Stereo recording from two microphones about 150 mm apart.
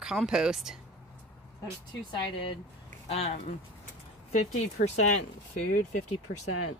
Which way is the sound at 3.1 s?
45° left (ahead or behind).